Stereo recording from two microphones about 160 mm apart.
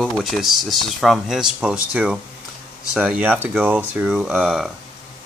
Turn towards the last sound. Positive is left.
turn(degrees=-5)  # may be behind; listen again after turning